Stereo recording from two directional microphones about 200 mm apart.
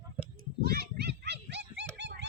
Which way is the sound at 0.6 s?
50° right (ahead or behind).